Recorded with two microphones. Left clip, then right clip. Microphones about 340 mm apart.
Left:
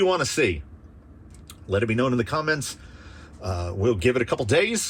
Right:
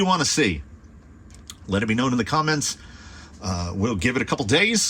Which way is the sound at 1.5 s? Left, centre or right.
Right.